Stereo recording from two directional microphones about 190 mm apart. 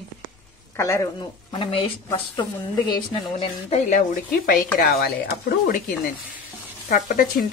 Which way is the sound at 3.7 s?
40° left (ahead or behind).